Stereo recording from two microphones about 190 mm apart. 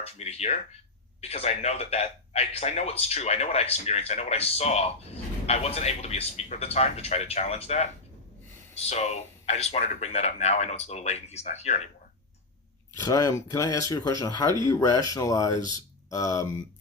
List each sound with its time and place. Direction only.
0.0 s speech: 35° left (ahead or behind)
8.9 s speech: 35° left (ahead or behind)
13.1 s speech: 20° left (ahead or behind)